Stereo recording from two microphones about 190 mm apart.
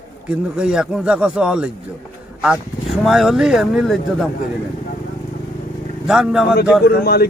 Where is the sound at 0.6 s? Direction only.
5° right (ahead or behind).